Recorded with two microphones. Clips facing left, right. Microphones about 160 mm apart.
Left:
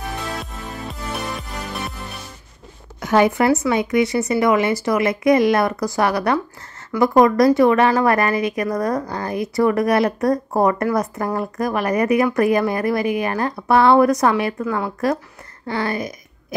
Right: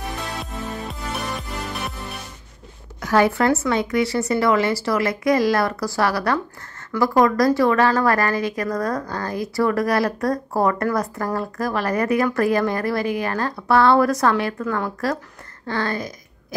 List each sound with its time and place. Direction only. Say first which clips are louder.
3.0 s a woman's voice: left 2 dB; 20° left (ahead or behind)